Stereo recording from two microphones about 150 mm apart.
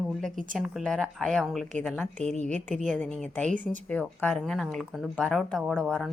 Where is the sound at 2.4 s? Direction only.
55° right (ahead or behind).